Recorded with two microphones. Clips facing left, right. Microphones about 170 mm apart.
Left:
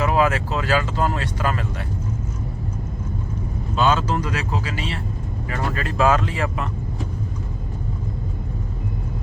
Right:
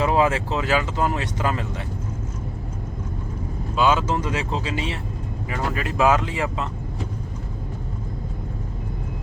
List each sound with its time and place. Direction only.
0.0 s speech: 25° right (ahead or behind)
3.8 s speech: 10° right (ahead or behind)
4.0 s speech: 20° right (ahead or behind)